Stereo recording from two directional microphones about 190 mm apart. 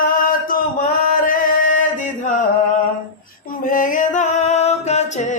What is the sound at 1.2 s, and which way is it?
Chant, 45° left (ahead or behind).